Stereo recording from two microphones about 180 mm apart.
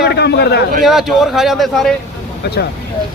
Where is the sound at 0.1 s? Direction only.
65° left (ahead or behind).